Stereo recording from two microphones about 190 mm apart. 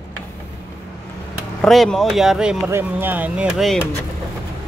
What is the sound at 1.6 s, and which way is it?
Speech, centre (ahead or behind).